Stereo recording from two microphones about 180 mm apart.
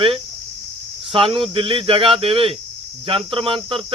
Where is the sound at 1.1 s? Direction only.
30° right (ahead or behind).